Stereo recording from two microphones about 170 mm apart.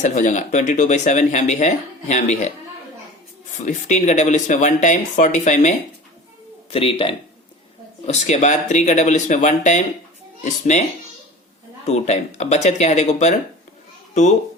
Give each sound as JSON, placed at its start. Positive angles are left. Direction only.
{"t": 0.0, "sound": "speech", "side_deg": 45}
{"t": 3.7, "sound": "speech", "side_deg": 45}
{"t": 6.7, "sound": "speech", "side_deg": 35}
{"t": 8.0, "sound": "speech", "side_deg": 40}
{"t": 11.9, "sound": "speech", "side_deg": 40}